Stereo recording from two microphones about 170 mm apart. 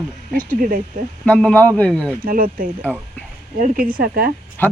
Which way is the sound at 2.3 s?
55° right (ahead or behind).